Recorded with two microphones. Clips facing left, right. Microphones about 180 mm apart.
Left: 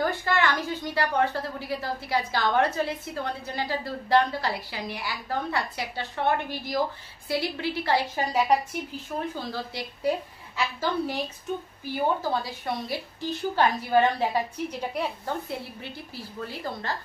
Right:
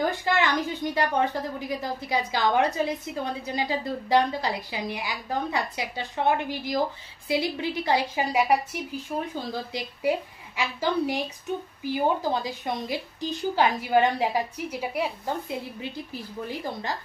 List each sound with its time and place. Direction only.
0.0 s a woman's voice: 15° right (ahead or behind)